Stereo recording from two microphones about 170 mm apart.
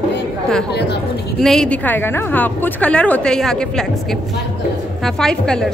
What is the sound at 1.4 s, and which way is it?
A woman's voice, 5° left (ahead or behind).